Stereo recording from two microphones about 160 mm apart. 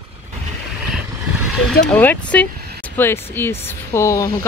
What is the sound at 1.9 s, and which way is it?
Speech, 10° left (ahead or behind).